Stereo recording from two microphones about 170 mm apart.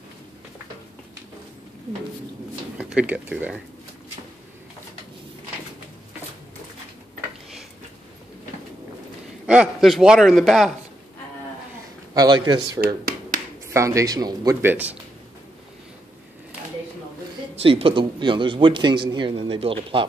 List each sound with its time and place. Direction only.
2.8 s speech: 5° right (ahead or behind)
9.5 s a man's voice: 5° right (ahead or behind)
12.1 s speech: 25° right (ahead or behind)
12.8 s finger snapping: 60° right (ahead or behind)
13.7 s speech: 20° right (ahead or behind)
17.6 s speech: 35° right (ahead or behind)